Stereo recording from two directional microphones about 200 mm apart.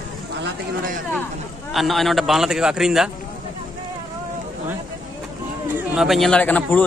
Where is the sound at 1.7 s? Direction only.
Centre (ahead or behind).